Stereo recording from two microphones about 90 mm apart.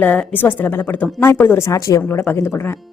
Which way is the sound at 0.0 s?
15° left (ahead or behind).